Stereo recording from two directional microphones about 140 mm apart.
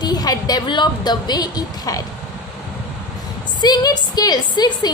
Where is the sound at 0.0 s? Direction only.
30° left (ahead or behind).